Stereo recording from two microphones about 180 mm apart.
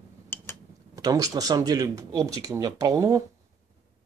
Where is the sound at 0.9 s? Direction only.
20° right (ahead or behind).